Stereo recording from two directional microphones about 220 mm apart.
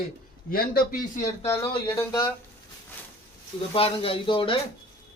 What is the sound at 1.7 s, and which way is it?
Speech, 20° left (ahead or behind).